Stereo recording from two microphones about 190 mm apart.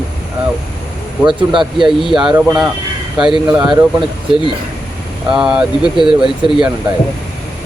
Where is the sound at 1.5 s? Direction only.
Centre (ahead or behind).